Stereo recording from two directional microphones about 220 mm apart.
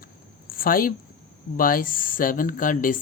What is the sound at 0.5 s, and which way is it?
A woman's voice, 40° left (ahead or behind).